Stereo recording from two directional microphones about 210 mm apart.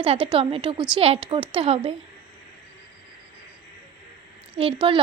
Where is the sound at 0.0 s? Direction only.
25° right (ahead or behind).